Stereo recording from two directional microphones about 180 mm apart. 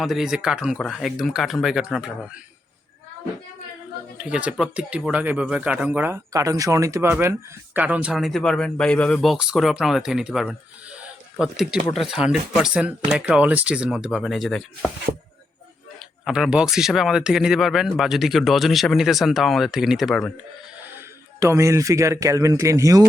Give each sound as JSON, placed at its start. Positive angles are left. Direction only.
{"t": 0.0, "sound": "speech", "side_deg": 0}
{"t": 4.2, "sound": "speech", "side_deg": -5}
{"t": 16.2, "sound": "speech", "side_deg": -5}
{"t": 20.8, "sound": "speech", "side_deg": -15}